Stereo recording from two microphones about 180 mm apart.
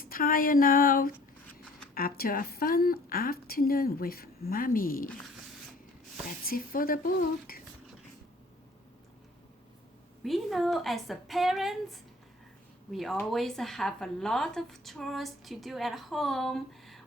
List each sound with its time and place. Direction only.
0.0 s a woman's voice: 55° left (ahead or behind)
6.4 s speech: 55° left (ahead or behind)
10.2 s speech: centre (ahead or behind)